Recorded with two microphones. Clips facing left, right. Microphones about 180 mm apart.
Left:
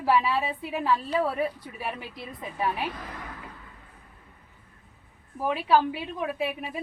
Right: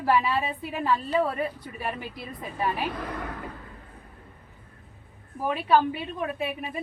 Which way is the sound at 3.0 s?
60° right (ahead or behind).